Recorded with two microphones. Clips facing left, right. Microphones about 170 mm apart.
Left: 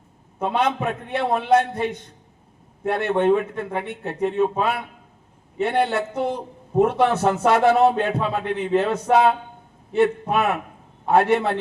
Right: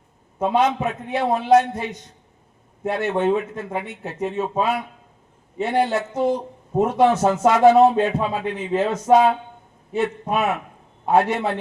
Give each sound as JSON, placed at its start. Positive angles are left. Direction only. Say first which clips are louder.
{"t": 0.5, "sound": "speech", "louder": "right 2 dB", "side_deg": 60}